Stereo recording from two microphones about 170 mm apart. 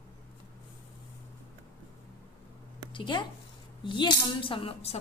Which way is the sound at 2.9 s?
30° left (ahead or behind).